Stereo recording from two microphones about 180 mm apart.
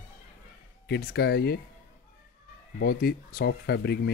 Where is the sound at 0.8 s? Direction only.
65° left (ahead or behind).